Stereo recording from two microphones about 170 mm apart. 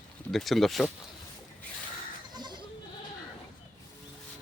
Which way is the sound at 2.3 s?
25° right (ahead or behind).